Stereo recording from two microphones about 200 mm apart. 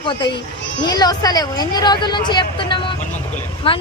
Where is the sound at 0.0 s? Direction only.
25° left (ahead or behind).